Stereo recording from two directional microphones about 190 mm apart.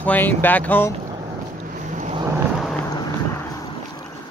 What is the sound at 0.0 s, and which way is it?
Speech, 10° left (ahead or behind).